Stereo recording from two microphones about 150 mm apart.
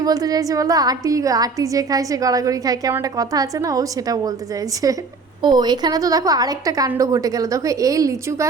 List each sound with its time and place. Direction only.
0.0 s a woman's voice: 25° right (ahead or behind)
5.4 s a woman's voice: 30° right (ahead or behind)